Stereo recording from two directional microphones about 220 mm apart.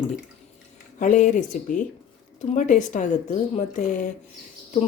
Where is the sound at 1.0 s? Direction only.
35° left (ahead or behind).